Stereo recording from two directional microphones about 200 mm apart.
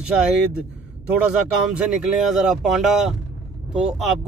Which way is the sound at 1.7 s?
5° right (ahead or behind).